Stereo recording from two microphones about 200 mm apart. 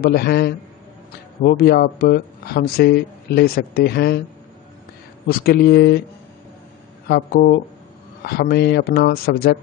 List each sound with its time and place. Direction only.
0.0 s speech: 50° left (ahead or behind)
5.3 s speech: 50° left (ahead or behind)
7.1 s speech: 50° left (ahead or behind)